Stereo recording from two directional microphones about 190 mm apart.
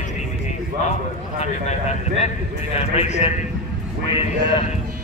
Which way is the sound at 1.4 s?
35° left (ahead or behind).